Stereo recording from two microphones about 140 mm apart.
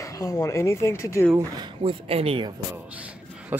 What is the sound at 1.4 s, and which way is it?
Speech, 30° right (ahead or behind).